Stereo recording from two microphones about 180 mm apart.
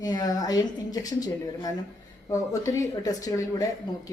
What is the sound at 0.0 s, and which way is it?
Speech, 20° left (ahead or behind).